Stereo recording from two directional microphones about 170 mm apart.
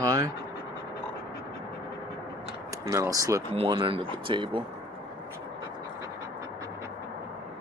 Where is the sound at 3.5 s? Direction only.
30° right (ahead or behind).